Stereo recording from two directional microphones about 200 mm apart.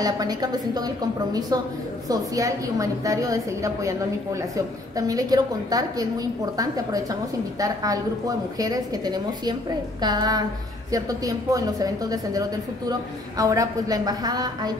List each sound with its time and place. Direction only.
0.0 s a woman's voice: 20° right (ahead or behind)